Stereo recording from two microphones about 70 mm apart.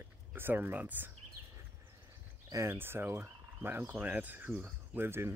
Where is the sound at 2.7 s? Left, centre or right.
Right.